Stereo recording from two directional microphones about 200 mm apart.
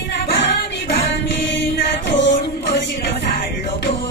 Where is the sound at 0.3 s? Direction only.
60° left (ahead or behind).